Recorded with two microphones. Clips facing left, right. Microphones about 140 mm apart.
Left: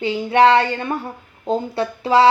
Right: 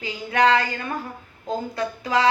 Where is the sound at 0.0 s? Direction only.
30° left (ahead or behind).